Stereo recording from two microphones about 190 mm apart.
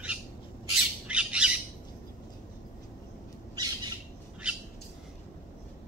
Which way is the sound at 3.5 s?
20° right (ahead or behind).